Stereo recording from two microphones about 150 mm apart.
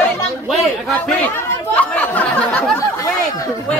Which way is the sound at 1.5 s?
10° left (ahead or behind).